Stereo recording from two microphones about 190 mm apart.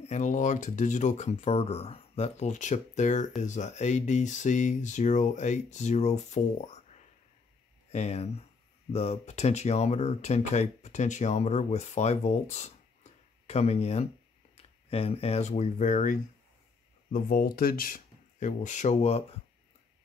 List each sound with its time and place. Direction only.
0.0 s speech: 40° left (ahead or behind)
7.9 s speech: 35° left (ahead or behind)